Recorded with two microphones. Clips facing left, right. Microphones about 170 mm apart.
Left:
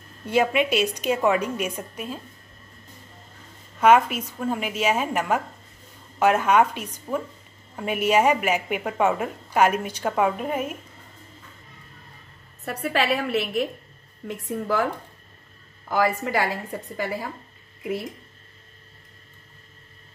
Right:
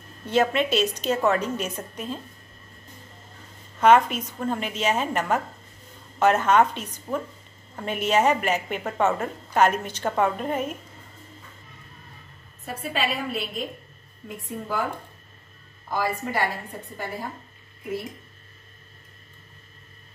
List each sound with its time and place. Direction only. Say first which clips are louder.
0.3 s a woman's voice: left 1 dB; 10° left (ahead or behind)
3.8 s a woman's voice: even; 10° left (ahead or behind)
12.6 s a woman's voice: left 4 dB; 70° left (ahead or behind); by 14.9 s 90° left
15.9 s speech: left 4 dB; 90° left